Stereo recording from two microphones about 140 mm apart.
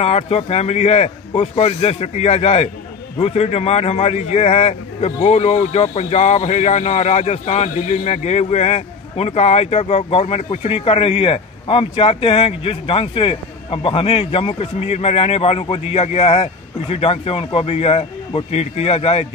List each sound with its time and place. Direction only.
0.0 s a man's voice: 45° left (ahead or behind)